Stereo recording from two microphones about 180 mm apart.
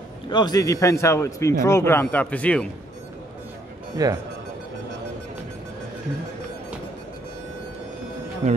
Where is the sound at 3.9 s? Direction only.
20° right (ahead or behind).